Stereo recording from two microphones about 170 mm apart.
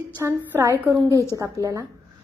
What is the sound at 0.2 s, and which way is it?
A woman's voice, 15° right (ahead or behind).